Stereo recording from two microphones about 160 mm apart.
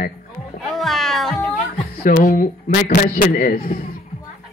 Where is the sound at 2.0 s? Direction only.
60° left (ahead or behind).